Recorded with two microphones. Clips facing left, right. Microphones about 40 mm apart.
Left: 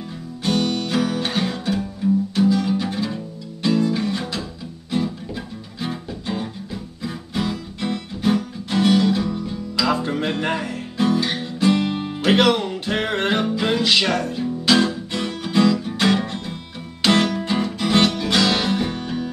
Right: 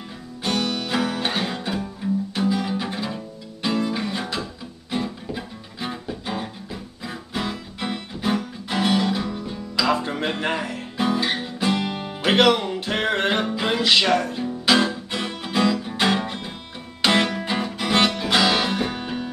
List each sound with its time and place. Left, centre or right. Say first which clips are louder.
0.4 s music: left 3 dB; centre
11.7 s music: left 4 dB; centre